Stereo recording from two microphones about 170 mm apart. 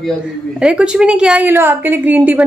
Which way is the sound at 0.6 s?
5° right (ahead or behind).